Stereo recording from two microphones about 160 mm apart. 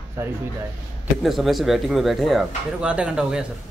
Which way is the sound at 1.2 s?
Centre (ahead or behind).